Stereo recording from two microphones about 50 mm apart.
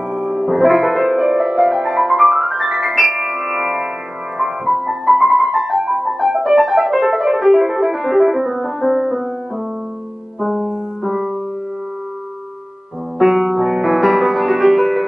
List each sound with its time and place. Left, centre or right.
0.1 s music: centre
10.4 s music: centre
13.2 s music: centre